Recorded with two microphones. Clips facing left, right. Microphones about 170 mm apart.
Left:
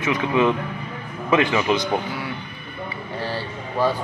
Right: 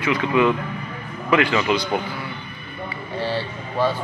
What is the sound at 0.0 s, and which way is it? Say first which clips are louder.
Speech: right 1 dB; 20° left (ahead or behind).